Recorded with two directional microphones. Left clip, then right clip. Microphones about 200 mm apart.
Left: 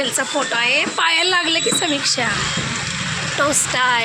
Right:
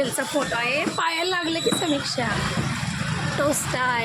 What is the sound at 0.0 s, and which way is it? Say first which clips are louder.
A woman's voice: left 4 dB; centre (ahead or behind).